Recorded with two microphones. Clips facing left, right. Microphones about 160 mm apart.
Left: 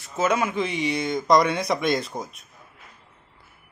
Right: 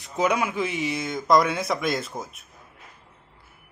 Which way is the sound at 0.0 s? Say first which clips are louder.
Left 1 dB; 15° right (ahead or behind).